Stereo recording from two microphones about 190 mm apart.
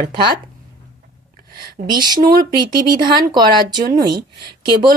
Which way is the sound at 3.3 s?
20° right (ahead or behind).